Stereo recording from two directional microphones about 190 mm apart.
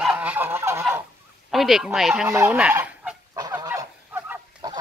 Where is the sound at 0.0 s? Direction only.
5° right (ahead or behind).